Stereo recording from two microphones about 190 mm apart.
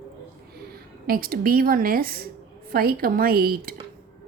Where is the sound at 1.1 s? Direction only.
50° right (ahead or behind).